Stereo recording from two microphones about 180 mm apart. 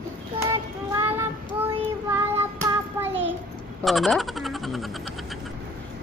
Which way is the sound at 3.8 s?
Centre (ahead or behind).